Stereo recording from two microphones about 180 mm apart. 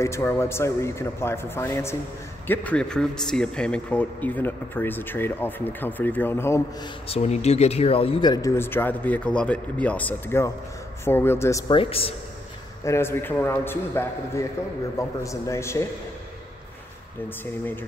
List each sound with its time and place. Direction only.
0.0 s a man's voice: 15° left (ahead or behind)
7.1 s a man's voice: 35° left (ahead or behind); by 11.6 s 15° left (ahead or behind)
11.7 s speech: 30° left (ahead or behind)
12.8 s a man's voice: 15° left (ahead or behind)